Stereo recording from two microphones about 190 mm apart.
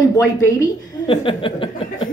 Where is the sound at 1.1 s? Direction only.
25° left (ahead or behind).